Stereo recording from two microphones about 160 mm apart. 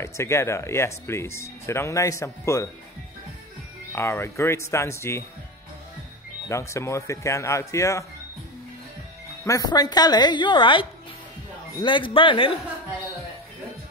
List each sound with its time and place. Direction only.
0.0 s speech: 15° left (ahead or behind)
3.9 s speech: 15° left (ahead or behind)
6.5 s speech: 20° left (ahead or behind)
9.4 s speech: 20° left (ahead or behind)